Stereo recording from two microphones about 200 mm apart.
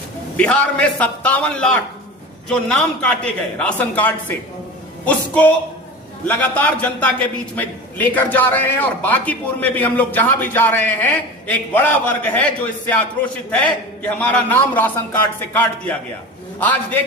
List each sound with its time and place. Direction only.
0.3 s a man's voice: 5° left (ahead or behind)
13.5 s a man's voice: 5° left (ahead or behind)